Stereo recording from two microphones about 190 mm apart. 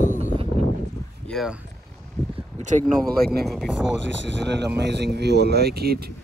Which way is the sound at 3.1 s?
55° right (ahead or behind).